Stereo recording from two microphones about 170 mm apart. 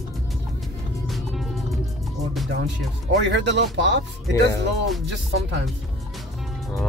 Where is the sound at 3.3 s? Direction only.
90° right.